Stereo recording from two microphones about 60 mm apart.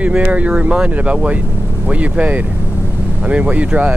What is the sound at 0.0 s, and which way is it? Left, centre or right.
Speech, right.